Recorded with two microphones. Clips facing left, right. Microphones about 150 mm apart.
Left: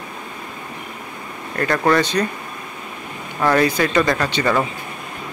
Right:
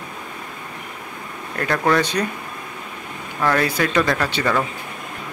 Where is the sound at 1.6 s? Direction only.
Centre (ahead or behind).